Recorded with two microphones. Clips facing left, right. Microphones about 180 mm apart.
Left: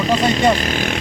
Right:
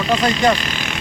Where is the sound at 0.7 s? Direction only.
50° left (ahead or behind).